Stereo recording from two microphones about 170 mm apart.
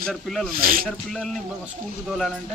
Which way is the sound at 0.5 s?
60° right (ahead or behind).